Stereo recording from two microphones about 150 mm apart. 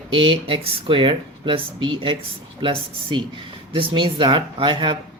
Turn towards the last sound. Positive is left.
turn(degrees=-35)  # may be behind; listen again after turning